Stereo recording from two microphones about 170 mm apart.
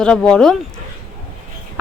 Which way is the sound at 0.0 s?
5° left (ahead or behind).